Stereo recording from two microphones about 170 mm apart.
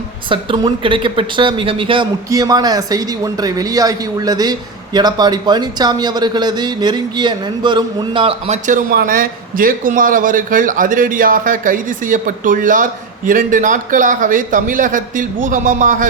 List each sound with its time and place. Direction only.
0.3 s speech: 30° right (ahead or behind)
8.6 s a man's voice: 60° right (ahead or behind)